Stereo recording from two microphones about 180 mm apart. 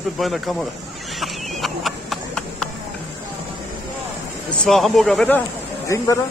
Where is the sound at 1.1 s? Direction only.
Centre (ahead or behind).